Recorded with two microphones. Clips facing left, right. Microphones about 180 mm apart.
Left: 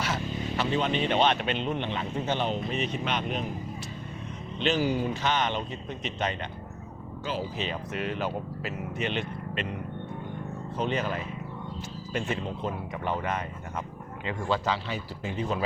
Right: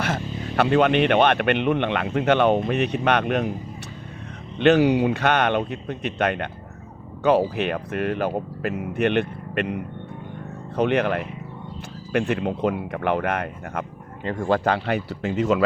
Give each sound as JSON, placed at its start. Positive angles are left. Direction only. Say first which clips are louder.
{"t": 0.0, "sound": "speech", "louder": "right 4 dB", "side_deg": -60}
{"t": 4.5, "sound": "speech", "louder": "right 10 dB", "side_deg": -65}
{"t": 10.8, "sound": "speech", "louder": "right 9 dB", "side_deg": -65}
{"t": 14.3, "sound": "speech", "louder": "right 7 dB", "side_deg": -50}